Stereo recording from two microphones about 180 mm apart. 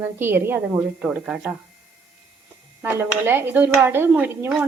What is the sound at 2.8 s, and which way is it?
A woman's voice, 10° right (ahead or behind).